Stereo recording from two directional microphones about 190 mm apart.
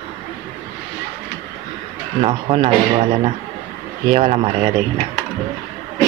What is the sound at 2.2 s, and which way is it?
Speech, 30° right (ahead or behind).